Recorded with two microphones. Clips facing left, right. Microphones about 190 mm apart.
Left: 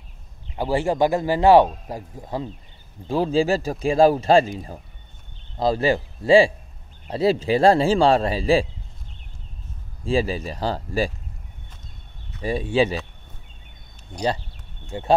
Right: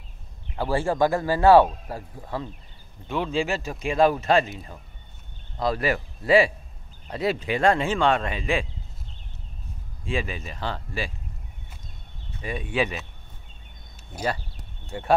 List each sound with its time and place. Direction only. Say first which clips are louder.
0.6 s speech: left 2 dB; 15° left (ahead or behind)
3.1 s speech: left 6 dB; 35° left (ahead or behind)
10.0 s speech: left 7 dB; 35° left (ahead or behind)
12.4 s speech: left 6 dB; 30° left (ahead or behind)
14.9 s speech: left 3 dB; 20° left (ahead or behind)